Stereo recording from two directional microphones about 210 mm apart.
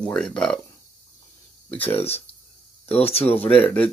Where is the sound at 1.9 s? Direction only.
30° left (ahead or behind).